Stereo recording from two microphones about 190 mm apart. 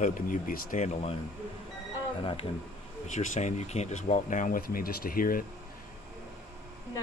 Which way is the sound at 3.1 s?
40° left (ahead or behind).